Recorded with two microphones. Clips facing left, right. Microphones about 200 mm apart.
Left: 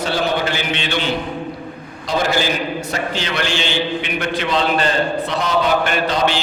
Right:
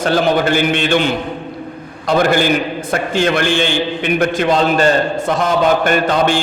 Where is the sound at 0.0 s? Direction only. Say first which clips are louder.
Right 6 dB; 45° right (ahead or behind).